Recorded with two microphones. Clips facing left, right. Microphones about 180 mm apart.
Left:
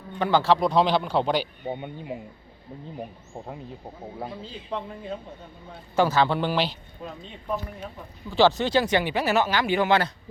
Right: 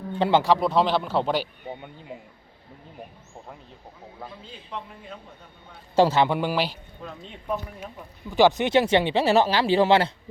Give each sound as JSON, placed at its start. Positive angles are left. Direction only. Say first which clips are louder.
{"t": 0.2, "sound": "speech", "louder": "right 2 dB", "side_deg": -25}
{"t": 0.4, "sound": "speech", "louder": "even", "side_deg": -5}
{"t": 1.6, "sound": "speech", "louder": "left 5 dB", "side_deg": 20}
{"t": 4.2, "sound": "a man's voice", "louder": "left 5 dB", "side_deg": 30}
{"t": 6.0, "sound": "speech", "louder": "right 2 dB", "side_deg": -25}
{"t": 6.2, "sound": "speech", "louder": "even", "side_deg": -10}
{"t": 8.3, "sound": "speech", "louder": "right 1 dB", "side_deg": -15}